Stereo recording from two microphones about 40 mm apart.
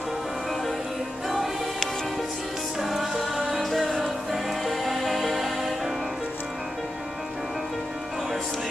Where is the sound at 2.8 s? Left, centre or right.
Centre.